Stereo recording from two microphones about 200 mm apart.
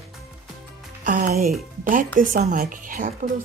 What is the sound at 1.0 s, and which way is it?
Speech, 40° right (ahead or behind).